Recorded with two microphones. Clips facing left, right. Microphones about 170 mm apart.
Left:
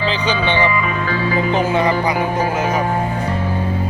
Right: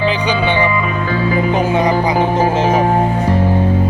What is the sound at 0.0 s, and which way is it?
Speech, 15° right (ahead or behind).